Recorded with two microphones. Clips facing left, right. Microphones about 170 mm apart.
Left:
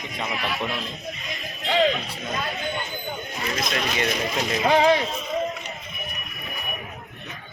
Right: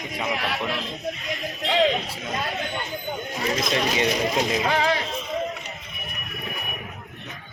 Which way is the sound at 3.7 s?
20° right (ahead or behind).